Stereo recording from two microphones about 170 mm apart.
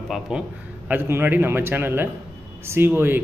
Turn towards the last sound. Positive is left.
turn(degrees=-10)  # may be behind; listen again after turning